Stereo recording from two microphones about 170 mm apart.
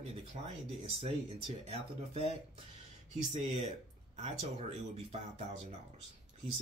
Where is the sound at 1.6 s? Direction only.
35° right (ahead or behind).